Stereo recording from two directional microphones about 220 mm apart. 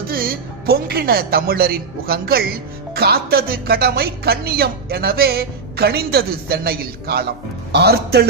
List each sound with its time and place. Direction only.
0.1 s speech: 40° right (ahead or behind)